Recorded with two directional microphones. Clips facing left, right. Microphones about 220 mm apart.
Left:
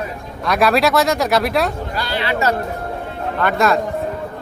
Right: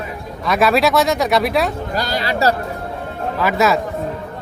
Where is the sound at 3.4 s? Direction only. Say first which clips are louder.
Even; 5° right (ahead or behind).